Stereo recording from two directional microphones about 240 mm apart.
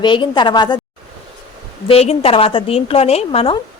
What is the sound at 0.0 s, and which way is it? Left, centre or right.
Speech, centre.